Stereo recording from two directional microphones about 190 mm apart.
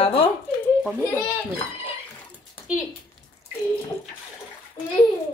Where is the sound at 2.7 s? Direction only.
5° right (ahead or behind).